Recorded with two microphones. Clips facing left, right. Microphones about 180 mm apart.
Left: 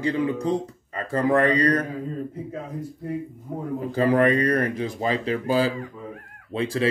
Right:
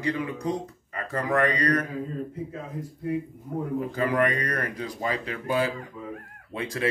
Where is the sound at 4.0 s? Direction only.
30° left (ahead or behind).